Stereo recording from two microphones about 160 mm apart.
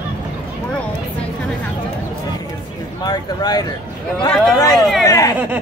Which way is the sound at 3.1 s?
25° left (ahead or behind).